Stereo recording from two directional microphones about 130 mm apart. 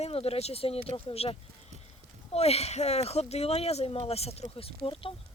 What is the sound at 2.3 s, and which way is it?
Speech, 55° left (ahead or behind).